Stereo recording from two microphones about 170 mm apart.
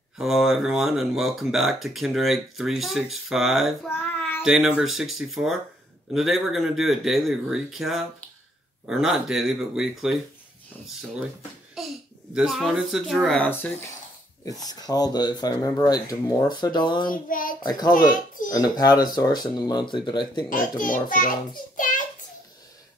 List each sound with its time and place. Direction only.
0.2 s speech: centre (ahead or behind)
3.9 s child singing: 10° left (ahead or behind)
4.4 s speech: 5° right (ahead or behind)
11.8 s a sound: centre (ahead or behind)
12.4 s speech: centre (ahead or behind); by 17.1 s 25° left (ahead or behind)
17.1 s a child's voice: 55° left (ahead or behind)
17.6 s speech: 25° left (ahead or behind)
17.9 s a child's voice: 50° left (ahead or behind)
18.5 s speech: 25° left (ahead or behind)
20.4 s a child's voice: 55° left (ahead or behind)